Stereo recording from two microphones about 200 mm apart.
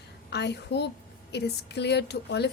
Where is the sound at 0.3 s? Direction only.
55° left (ahead or behind).